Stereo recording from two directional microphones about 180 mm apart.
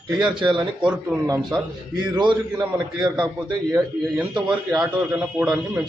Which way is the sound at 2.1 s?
25° right (ahead or behind).